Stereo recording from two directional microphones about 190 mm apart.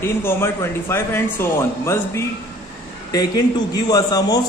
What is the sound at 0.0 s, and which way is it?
A man's voice, 15° left (ahead or behind).